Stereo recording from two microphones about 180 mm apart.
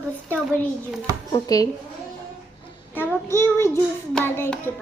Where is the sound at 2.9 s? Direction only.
15° left (ahead or behind).